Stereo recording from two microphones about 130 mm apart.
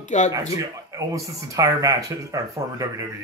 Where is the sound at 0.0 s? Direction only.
70° left (ahead or behind).